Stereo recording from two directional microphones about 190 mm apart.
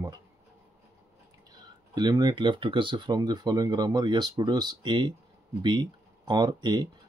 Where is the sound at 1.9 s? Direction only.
20° right (ahead or behind).